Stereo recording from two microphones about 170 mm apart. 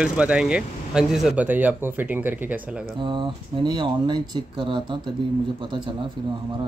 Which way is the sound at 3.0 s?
25° right (ahead or behind).